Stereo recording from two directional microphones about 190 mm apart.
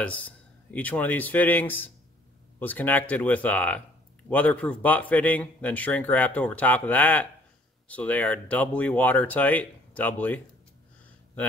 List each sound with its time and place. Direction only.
0.0 s speech: 5° left (ahead or behind)